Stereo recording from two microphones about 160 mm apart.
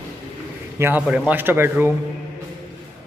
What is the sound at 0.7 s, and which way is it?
A man's voice, 15° right (ahead or behind).